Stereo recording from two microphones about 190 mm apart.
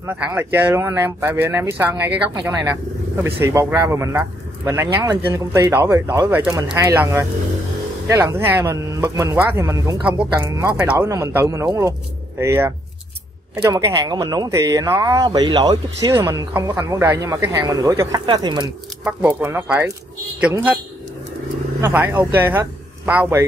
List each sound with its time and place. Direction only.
0.0 s speech: 10° right (ahead or behind)
19.0 s speech: 10° right (ahead or behind)
21.8 s speech: 10° right (ahead or behind)